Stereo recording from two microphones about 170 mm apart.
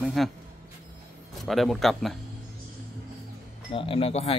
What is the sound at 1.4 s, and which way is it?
Speech, centre (ahead or behind).